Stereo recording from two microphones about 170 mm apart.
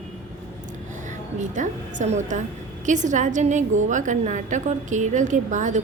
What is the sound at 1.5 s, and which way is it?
A woman's voice, 45° right (ahead or behind).